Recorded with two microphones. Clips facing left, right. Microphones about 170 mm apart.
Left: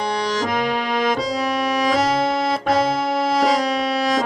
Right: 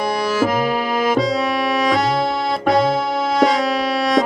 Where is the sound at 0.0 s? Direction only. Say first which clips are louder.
Right 4 dB; 10° right (ahead or behind).